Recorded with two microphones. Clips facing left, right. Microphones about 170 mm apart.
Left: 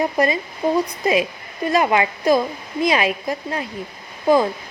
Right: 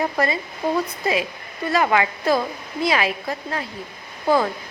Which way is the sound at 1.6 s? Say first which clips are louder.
Left 2 dB; 20° left (ahead or behind).